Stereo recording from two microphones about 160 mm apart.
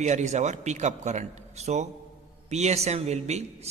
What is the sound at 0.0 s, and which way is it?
A man's voice, 45° right (ahead or behind).